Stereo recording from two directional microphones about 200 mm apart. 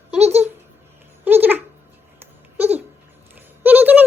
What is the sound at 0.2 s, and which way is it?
Babbling, 30° right (ahead or behind).